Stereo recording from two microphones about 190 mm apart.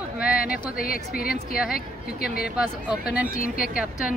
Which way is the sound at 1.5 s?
5° right (ahead or behind).